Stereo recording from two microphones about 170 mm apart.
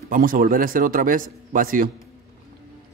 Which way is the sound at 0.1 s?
55° right (ahead or behind).